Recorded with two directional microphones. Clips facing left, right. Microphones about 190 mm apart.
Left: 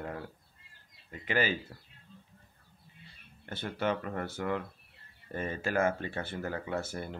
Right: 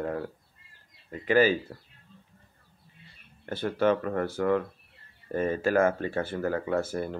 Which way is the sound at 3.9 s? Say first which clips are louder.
Right 7 dB; 45° right (ahead or behind).